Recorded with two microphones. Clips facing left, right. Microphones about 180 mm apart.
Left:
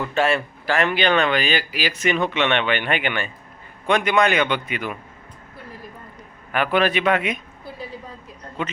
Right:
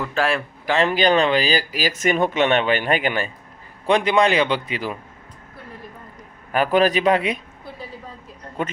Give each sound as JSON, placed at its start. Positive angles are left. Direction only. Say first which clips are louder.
{"t": 0.0, "sound": "speech", "louder": "left 1 dB", "side_deg": 0}
{"t": 0.6, "sound": "speech", "louder": "right 3 dB", "side_deg": -20}
{"t": 0.9, "sound": "speech", "louder": "right 3 dB", "side_deg": -40}
{"t": 6.5, "sound": "a man's voice", "louder": "right 3 dB", "side_deg": -40}